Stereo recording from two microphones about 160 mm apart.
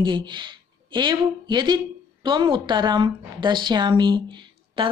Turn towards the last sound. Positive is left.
turn(degrees=-30)  # may be behind; listen again after turning